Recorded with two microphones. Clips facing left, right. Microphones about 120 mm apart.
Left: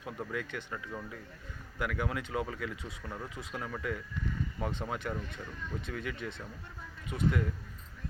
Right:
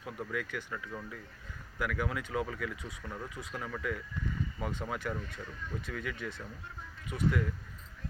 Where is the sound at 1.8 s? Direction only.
25° left (ahead or behind).